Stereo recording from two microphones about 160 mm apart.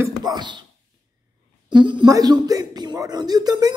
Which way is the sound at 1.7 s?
30° right (ahead or behind).